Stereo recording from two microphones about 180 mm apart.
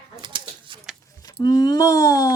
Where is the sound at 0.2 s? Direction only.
25° right (ahead or behind).